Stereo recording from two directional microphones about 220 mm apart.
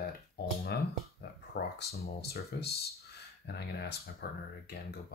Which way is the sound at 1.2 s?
45° left (ahead or behind).